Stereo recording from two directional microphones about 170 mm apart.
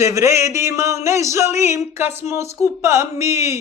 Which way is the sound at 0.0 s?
15° right (ahead or behind).